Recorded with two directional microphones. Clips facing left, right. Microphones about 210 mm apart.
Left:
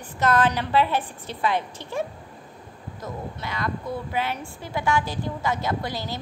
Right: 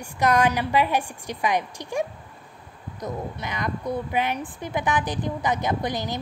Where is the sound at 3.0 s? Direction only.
15° right (ahead or behind).